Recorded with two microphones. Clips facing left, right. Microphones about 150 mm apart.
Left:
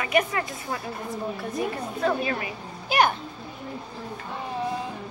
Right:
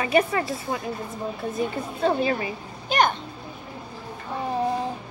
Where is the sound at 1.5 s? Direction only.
25° right (ahead or behind).